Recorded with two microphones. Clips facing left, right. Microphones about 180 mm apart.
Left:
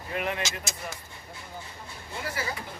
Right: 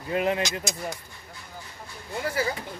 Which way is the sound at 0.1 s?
30° right (ahead or behind).